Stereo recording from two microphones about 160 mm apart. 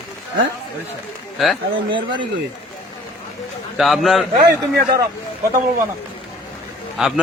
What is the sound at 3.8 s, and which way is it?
Speech, centre (ahead or behind).